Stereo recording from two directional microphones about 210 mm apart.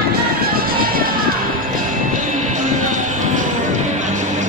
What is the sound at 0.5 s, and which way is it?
Music, 45° right (ahead or behind).